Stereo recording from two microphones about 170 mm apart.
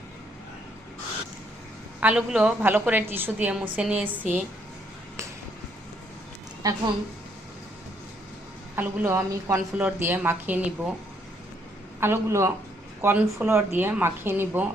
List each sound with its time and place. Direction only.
2.0 s a woman's voice: 5° right (ahead or behind)
6.6 s a woman's voice: 25° right (ahead or behind)
8.7 s a woman's voice: 15° right (ahead or behind)
11.9 s a woman's voice: 15° right (ahead or behind)